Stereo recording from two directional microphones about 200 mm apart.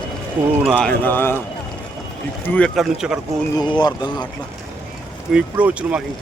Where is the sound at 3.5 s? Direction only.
20° left (ahead or behind).